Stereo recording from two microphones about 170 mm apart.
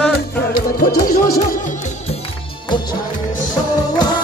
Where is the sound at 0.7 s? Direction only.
55° left (ahead or behind).